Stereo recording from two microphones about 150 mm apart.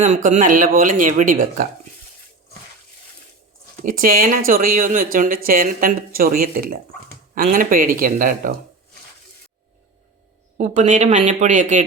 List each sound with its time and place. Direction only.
0.0 s speech: 55° right (ahead or behind)
3.8 s speech: 75° right (ahead or behind)
7.3 s speech: 65° right (ahead or behind)
10.6 s speech: 50° right (ahead or behind)